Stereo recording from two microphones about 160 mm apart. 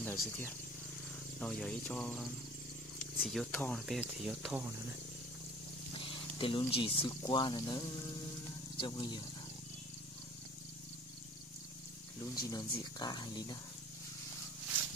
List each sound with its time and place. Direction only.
0.0 s speech: 10° left (ahead or behind)
3.8 s speech: 5° right (ahead or behind)
5.9 s speech: 35° left (ahead or behind)
12.4 s speech: 25° left (ahead or behind)